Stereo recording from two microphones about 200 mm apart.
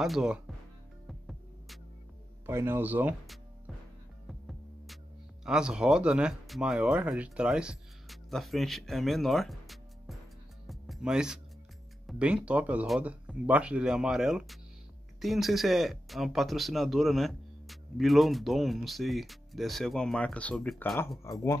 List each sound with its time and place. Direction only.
0.0 s speech: centre (ahead or behind)
1.0 s music: centre (ahead or behind)
2.4 s speech: 10° right (ahead or behind)
4.3 s music: centre (ahead or behind)
5.4 s speech: 5° right (ahead or behind)
10.7 s music: centre (ahead or behind)
12.1 s speech: 5° right (ahead or behind)
21.2 s speech: 15° left (ahead or behind)